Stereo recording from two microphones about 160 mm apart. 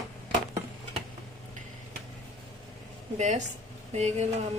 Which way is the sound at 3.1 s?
45° right (ahead or behind).